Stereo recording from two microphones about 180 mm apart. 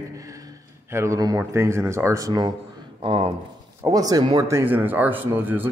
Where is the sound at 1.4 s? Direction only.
15° right (ahead or behind).